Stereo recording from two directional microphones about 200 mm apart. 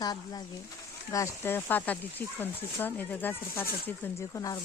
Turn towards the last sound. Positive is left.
turn(degrees=15)  # may be behind; listen again after turning